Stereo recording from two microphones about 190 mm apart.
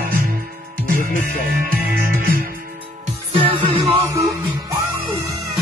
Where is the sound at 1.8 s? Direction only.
50° right (ahead or behind).